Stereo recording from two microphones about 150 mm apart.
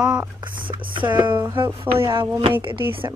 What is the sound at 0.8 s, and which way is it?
Speech, 35° right (ahead or behind).